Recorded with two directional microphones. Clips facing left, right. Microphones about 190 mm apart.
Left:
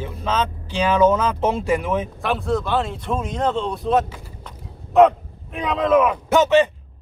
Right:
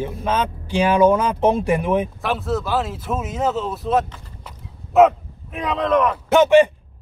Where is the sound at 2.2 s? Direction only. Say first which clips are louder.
Left 1 dB; centre (ahead or behind).